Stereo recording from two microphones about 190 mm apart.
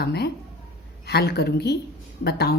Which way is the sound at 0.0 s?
60° left (ahead or behind).